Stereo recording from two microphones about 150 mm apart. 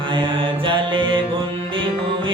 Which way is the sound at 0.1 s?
35° right (ahead or behind).